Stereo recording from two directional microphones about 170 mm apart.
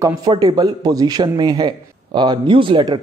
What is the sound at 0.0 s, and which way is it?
A man's voice, 20° right (ahead or behind).